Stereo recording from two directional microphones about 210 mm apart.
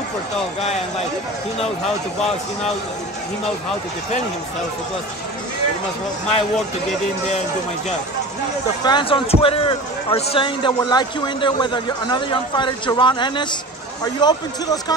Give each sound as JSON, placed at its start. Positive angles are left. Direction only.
{"t": 8.8, "sound": "a man's voice", "side_deg": 20}